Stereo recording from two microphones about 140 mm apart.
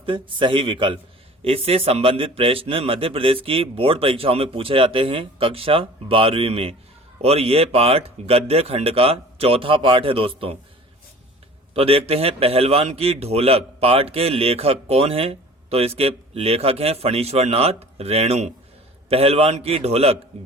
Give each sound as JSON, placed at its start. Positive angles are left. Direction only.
{"t": 0.0, "sound": "a man's voice", "side_deg": -40}
{"t": 11.7, "sound": "a man's voice", "side_deg": -45}